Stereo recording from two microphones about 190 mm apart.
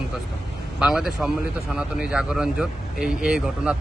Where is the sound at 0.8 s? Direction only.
Centre (ahead or behind).